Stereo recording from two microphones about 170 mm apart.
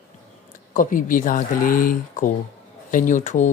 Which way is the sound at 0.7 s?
50° left (ahead or behind).